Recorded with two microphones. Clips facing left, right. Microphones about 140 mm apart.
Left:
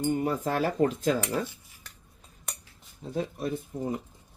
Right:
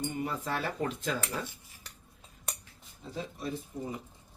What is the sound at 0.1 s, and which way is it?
Speech, 45° left (ahead or behind).